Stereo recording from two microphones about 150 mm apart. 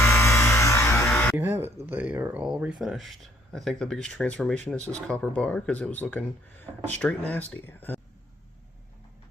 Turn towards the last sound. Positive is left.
turn(degrees=15)  # may be behind; listen again after turning